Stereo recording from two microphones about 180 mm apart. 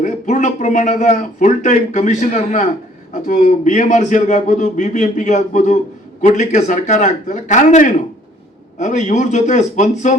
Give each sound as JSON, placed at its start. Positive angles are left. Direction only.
{"t": 0.0, "sound": "a man's voice", "side_deg": 40}